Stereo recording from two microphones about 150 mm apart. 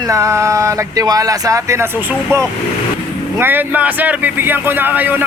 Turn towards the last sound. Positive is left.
turn(degrees=-10)  # may be behind; listen again after turning